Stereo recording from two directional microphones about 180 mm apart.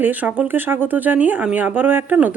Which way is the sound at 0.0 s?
10° right (ahead or behind).